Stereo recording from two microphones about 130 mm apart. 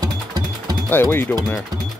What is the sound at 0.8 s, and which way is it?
Speech, 20° left (ahead or behind).